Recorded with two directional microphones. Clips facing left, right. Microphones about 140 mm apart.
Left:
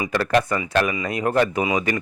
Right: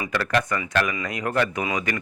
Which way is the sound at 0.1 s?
35° left (ahead or behind).